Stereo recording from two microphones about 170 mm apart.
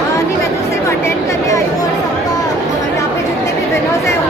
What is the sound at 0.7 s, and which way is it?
Chatter, 15° left (ahead or behind).